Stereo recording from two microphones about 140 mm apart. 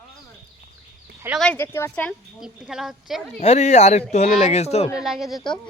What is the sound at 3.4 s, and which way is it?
Speech, 50° left (ahead or behind).